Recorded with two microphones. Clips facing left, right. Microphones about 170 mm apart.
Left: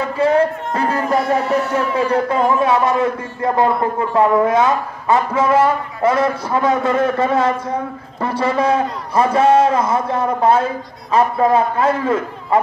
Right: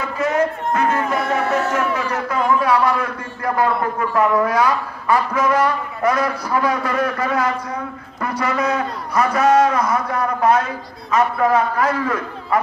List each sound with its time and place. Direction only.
0.0 s speech: 30° left (ahead or behind)